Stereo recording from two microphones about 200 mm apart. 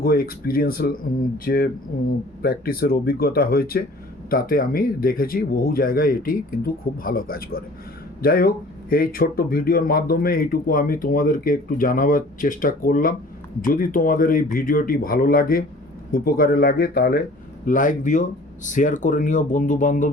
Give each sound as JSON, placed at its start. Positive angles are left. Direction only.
{"t": 0.0, "sound": "speech", "side_deg": 45}